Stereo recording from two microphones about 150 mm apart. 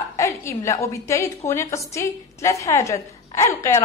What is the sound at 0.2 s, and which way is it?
A woman's voice, 20° left (ahead or behind).